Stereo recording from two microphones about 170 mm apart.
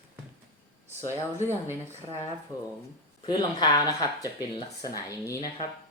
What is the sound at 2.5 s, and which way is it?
Speech, 20° left (ahead or behind).